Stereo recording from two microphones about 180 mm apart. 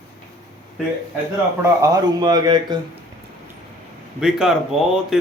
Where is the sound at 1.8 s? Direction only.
20° right (ahead or behind).